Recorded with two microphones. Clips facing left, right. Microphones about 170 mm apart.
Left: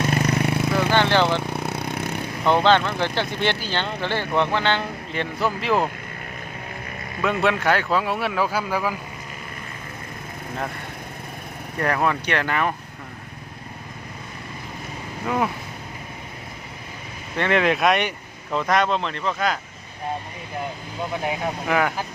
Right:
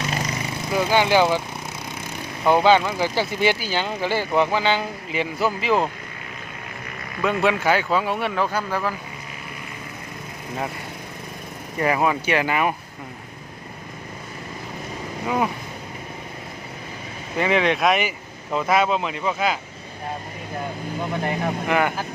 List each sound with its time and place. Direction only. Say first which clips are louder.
0.1 s a sound: left 6 dB; 60° left (ahead or behind)
0.8 s speech: right 3 dB; 10° right (ahead or behind)
1.5 s a sound: left 6 dB; 65° left (ahead or behind)
2.4 s speech: right 2 dB; 10° right (ahead or behind)
7.2 s speech: right 1 dB; centre (ahead or behind)
11.8 s speech: right 2 dB; 5° right (ahead or behind)
17.3 s speech: even; 5° right (ahead or behind)
21.2 s speech: right 1 dB; centre (ahead or behind)